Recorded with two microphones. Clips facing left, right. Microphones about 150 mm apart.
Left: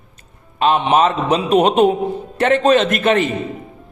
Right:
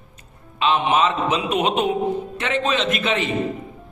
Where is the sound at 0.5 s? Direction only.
45° left (ahead or behind).